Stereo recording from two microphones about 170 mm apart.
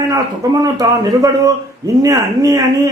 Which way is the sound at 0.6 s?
20° right (ahead or behind).